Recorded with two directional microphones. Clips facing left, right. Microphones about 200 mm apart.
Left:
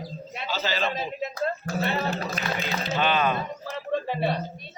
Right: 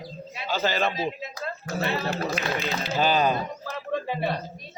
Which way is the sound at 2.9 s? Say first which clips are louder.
Right 2 dB; 35° right (ahead or behind).